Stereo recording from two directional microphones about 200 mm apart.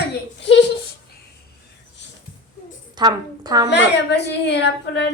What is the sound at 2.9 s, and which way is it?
Speech, 20° right (ahead or behind).